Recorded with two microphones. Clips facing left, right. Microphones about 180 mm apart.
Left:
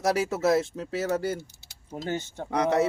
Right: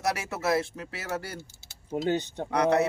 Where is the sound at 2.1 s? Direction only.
20° right (ahead or behind).